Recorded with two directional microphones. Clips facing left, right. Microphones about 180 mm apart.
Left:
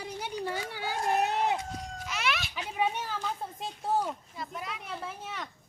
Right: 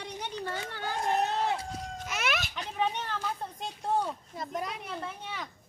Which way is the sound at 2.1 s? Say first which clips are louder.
Even; 45° right (ahead or behind).